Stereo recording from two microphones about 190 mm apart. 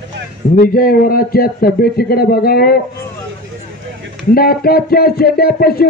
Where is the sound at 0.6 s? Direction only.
50° left (ahead or behind).